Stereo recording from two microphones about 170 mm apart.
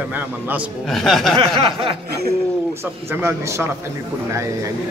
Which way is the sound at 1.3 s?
30° right (ahead or behind).